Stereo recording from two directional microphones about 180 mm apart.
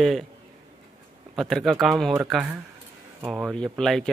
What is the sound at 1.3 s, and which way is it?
A man's voice, centre (ahead or behind).